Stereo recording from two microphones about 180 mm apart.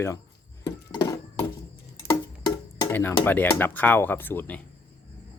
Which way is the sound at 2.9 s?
10° left (ahead or behind).